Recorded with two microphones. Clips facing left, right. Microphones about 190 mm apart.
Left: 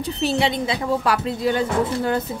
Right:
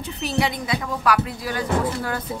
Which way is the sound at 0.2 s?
25° left (ahead or behind).